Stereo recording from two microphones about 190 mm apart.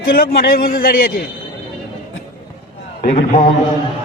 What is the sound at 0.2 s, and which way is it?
Speech, 50° left (ahead or behind).